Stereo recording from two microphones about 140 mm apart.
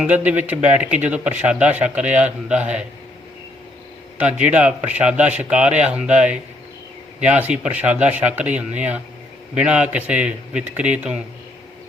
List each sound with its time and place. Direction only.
0.0 s speech: 10° right (ahead or behind)
4.2 s speech: 10° right (ahead or behind)